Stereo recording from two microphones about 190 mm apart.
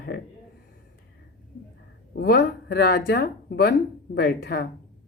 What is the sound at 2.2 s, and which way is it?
Speech, 50° left (ahead or behind).